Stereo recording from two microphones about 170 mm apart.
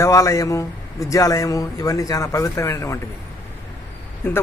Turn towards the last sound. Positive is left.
turn(degrees=10)  # may be behind; listen again after turning